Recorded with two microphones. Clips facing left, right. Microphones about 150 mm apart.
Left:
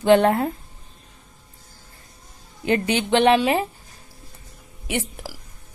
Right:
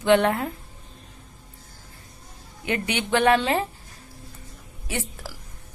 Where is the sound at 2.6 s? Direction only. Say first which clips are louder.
Left 6 dB; 35° left (ahead or behind); by 3.6 s 15° left (ahead or behind).